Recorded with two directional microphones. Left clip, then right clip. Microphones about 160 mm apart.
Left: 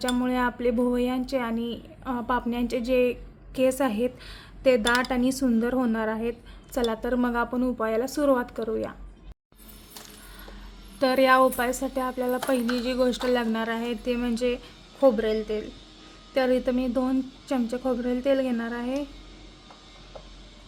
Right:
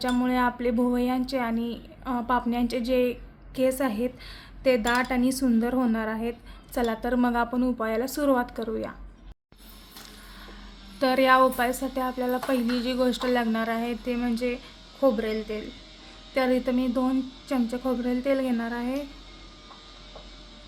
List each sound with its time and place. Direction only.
0.0 s speech: 20° left (ahead or behind)
11.0 s speech: 20° left (ahead or behind)